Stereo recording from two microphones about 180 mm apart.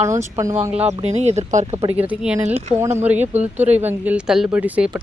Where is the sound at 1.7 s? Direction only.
10° right (ahead or behind).